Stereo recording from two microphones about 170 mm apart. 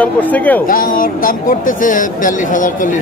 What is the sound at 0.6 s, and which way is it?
A man's voice, 55° left (ahead or behind).